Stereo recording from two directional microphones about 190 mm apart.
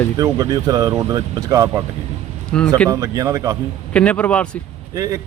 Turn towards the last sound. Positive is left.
turn(degrees=-15)  # may be behind; listen again after turning